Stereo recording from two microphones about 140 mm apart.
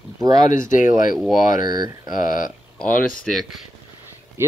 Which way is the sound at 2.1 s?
75° left (ahead or behind).